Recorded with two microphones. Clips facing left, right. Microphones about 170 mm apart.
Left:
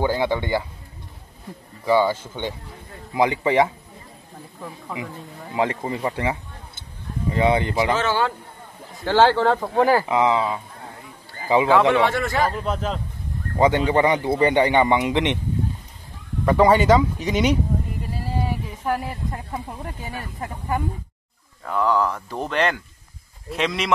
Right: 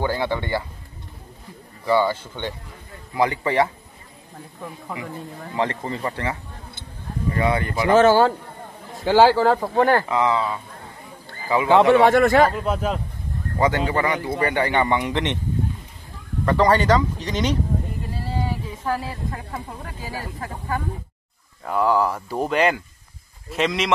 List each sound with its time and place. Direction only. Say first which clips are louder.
0.0 s speech: left 2 dB; 15° left (ahead or behind)
1.9 s speech: left 1 dB; 15° left (ahead or behind)
5.4 s speech: left 2 dB; 10° left (ahead or behind)
7.3 s speech: left 3 dB; 20° left (ahead or behind)
7.9 s a man's voice: right 11 dB; 45° right (ahead or behind)
9.0 s speech: right 2 dB; 10° right (ahead or behind)
10.0 s a man's voice: left 1 dB; 15° left (ahead or behind)
11.7 s a man's voice: right 4 dB; 30° right (ahead or behind)
12.0 s a man's voice: right 6 dB; 55° right (ahead or behind)
12.5 s speech: right 2 dB; 5° right (ahead or behind)
13.6 s speech: left 3 dB; 20° left (ahead or behind)
16.4 s speech: left 2 dB; 10° left (ahead or behind)
21.6 s speech: right 1 dB; 5° right (ahead or behind)